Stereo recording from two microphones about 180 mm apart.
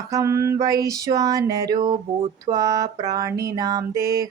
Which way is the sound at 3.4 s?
20° right (ahead or behind).